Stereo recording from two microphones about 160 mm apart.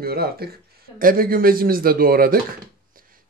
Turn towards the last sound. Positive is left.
turn(degrees=-60)  # may be behind; listen again after turning